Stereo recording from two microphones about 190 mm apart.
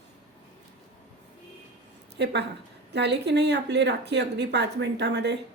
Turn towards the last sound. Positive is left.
turn(degrees=-65)  # may be behind; listen again after turning